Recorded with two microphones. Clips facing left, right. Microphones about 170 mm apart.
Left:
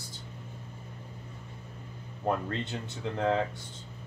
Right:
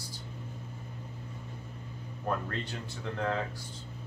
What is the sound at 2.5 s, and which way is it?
Speech, 20° left (ahead or behind).